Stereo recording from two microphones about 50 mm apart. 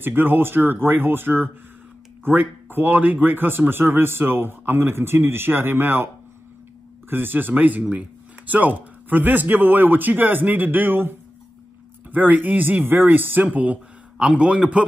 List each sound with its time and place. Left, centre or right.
0.0 s speech: right
7.1 s speech: right
14.1 s a man's voice: centre